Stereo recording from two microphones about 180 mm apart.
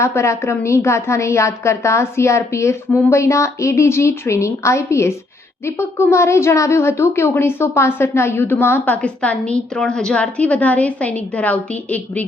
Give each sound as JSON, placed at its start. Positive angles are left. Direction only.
{"t": 0.0, "sound": "a woman's voice", "side_deg": 15}